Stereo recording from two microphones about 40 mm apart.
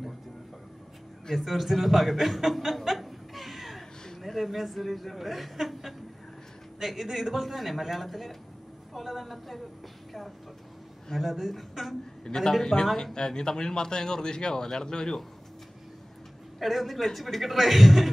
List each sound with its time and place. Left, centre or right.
1.3 s a woman's voice: centre
11.1 s a woman's voice: centre
12.3 s speech: centre
16.5 s a woman's voice: centre